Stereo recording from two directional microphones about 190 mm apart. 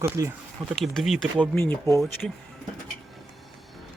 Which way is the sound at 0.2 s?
15° right (ahead or behind).